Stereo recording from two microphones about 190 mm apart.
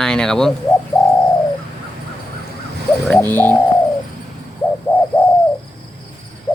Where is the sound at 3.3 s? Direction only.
10° left (ahead or behind).